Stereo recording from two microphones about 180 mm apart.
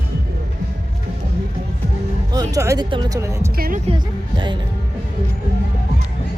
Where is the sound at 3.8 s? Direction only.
25° right (ahead or behind).